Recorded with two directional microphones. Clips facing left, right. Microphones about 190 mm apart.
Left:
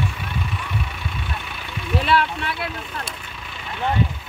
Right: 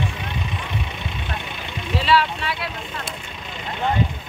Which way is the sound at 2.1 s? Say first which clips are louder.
Right 2 dB; 55° left (ahead or behind).